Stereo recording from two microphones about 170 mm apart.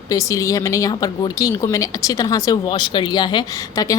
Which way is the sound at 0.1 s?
20° left (ahead or behind).